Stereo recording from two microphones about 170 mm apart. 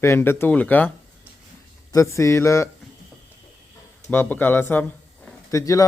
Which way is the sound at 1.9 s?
15° left (ahead or behind).